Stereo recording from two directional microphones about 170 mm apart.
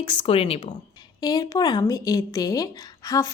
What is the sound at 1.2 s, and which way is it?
Speech, 25° left (ahead or behind).